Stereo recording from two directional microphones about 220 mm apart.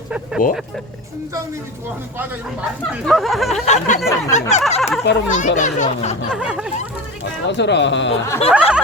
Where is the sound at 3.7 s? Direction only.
35° left (ahead or behind).